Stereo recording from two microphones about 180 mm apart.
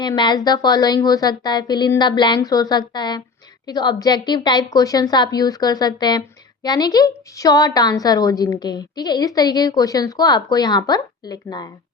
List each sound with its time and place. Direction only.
0.0 s a woman's voice: 25° left (ahead or behind)